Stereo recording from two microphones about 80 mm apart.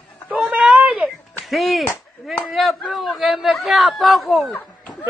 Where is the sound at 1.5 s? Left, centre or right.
Centre.